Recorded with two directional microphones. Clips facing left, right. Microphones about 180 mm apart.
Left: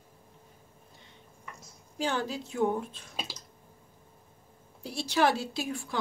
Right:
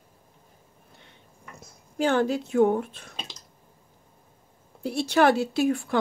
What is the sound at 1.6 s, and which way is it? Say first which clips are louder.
Speech: right 7 dB; 60° right (ahead or behind).